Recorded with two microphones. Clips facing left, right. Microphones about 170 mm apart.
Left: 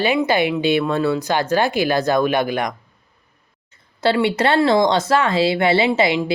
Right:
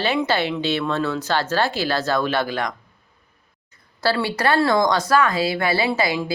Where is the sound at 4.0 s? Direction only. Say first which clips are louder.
Left 4 dB; 20° left (ahead or behind).